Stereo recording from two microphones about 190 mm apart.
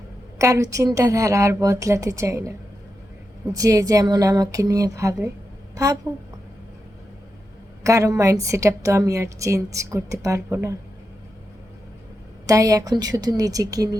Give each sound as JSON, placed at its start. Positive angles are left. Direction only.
{"t": 0.3, "sound": "a woman's voice", "side_deg": -15}
{"t": 3.5, "sound": "a woman's voice", "side_deg": -20}
{"t": 7.9, "sound": "a woman's voice", "side_deg": -15}
{"t": 12.5, "sound": "a woman's voice", "side_deg": -20}